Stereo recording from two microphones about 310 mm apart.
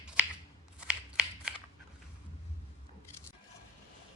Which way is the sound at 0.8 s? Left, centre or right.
Centre.